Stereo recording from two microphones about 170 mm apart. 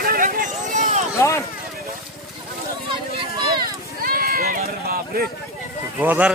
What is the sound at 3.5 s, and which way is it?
Run, 60° right (ahead or behind).